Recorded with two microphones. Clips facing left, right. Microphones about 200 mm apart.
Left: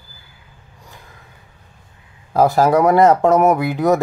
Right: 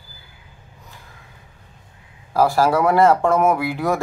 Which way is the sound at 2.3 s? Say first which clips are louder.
Left 3 dB; 20° left (ahead or behind).